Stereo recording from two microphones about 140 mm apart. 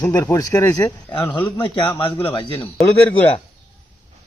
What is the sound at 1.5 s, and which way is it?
A man's voice, 35° left (ahead or behind).